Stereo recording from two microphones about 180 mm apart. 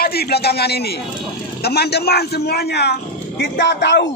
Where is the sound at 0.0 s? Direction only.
60° left (ahead or behind); by 4.1 s 75° left (ahead or behind).